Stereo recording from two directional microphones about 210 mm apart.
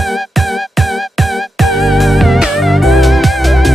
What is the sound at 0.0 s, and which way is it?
Music, centre (ahead or behind).